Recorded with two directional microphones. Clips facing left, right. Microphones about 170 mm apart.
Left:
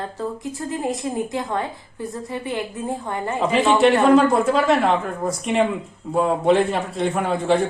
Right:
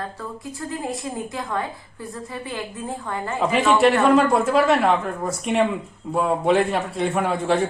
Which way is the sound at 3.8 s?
Centre (ahead or behind).